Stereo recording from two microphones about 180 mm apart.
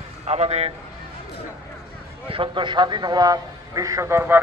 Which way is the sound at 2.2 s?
30° right (ahead or behind).